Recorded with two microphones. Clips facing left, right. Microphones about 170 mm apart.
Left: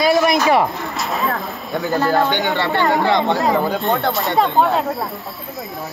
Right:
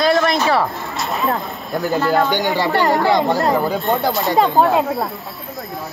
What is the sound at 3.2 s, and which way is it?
Speech, centre (ahead or behind).